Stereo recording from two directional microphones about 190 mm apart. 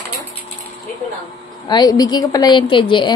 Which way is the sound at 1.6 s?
20° left (ahead or behind).